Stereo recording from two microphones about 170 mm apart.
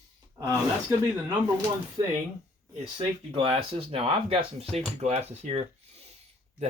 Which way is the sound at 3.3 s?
30° right (ahead or behind).